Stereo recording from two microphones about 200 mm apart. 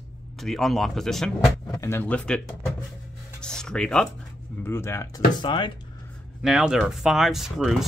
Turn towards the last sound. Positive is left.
turn(degrees=0)  # may be behind; listen again after turning